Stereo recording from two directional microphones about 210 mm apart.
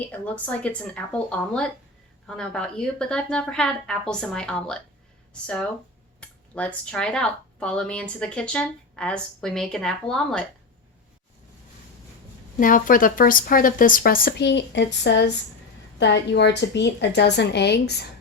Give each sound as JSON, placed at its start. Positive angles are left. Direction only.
{"t": 0.0, "sound": "speech", "side_deg": 5}
{"t": 12.5, "sound": "a woman's voice", "side_deg": 40}